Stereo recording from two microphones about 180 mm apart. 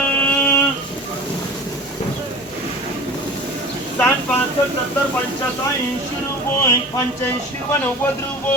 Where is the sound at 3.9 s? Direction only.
10° left (ahead or behind).